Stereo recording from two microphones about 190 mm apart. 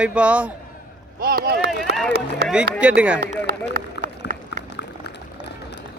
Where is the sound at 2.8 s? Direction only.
5° right (ahead or behind).